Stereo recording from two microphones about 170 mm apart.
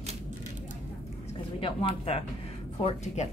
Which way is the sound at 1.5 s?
35° left (ahead or behind).